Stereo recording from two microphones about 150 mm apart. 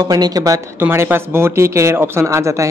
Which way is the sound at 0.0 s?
25° right (ahead or behind).